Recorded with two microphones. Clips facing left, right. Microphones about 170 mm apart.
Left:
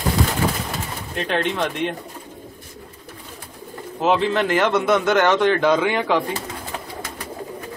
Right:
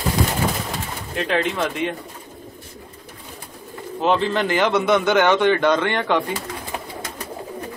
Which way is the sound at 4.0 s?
Centre (ahead or behind).